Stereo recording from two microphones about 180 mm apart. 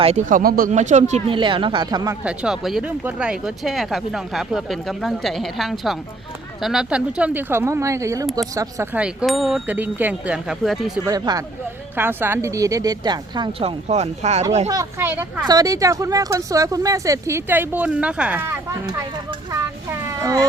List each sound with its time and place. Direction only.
0.0 s speech: 40° right (ahead or behind)
0.7 s speech: 40° right (ahead or behind)
1.4 s speech: 25° right (ahead or behind)
2.2 s speech: 5° right (ahead or behind)
11.0 s speech: 20° right (ahead or behind); by 14.4 s 40° right (ahead or behind)
14.7 s a child's voice: 15° right (ahead or behind)